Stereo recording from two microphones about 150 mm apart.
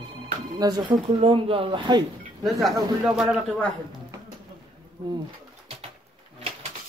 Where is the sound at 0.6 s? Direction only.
25° right (ahead or behind).